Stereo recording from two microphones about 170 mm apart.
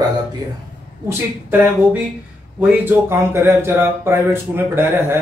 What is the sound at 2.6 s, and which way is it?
Speech, 10° right (ahead or behind).